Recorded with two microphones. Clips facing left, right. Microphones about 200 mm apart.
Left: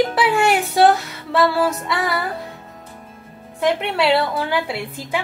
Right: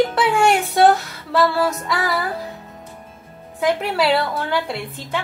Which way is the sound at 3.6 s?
Centre (ahead or behind).